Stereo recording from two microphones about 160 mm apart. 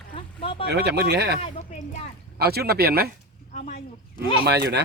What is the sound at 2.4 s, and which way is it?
Speech, 80° right.